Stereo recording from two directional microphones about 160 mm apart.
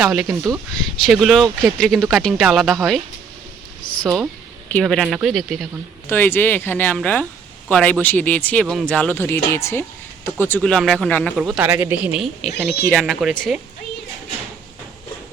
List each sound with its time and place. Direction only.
0.0 s speech: centre (ahead or behind)
0.3 s speech: 20° right (ahead or behind)
1.0 s speech: centre (ahead or behind)
4.0 s speech: centre (ahead or behind)
6.1 s speech: 10° left (ahead or behind)